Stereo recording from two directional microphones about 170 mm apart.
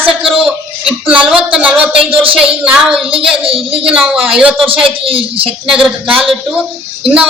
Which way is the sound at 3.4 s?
35° right (ahead or behind).